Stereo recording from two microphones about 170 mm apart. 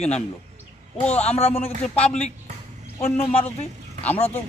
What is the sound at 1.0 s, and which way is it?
Speech, 10° left (ahead or behind).